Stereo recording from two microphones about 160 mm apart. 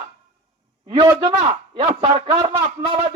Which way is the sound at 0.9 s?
40° right (ahead or behind).